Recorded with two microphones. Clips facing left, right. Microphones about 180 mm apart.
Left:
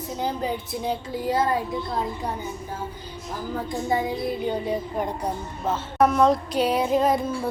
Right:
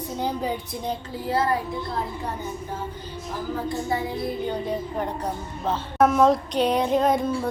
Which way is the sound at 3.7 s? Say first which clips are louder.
Left 4 dB; 15° left (ahead or behind).